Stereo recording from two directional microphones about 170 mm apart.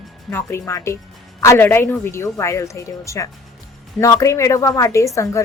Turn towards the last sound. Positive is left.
turn(degrees=15)  # may be behind; listen again after turning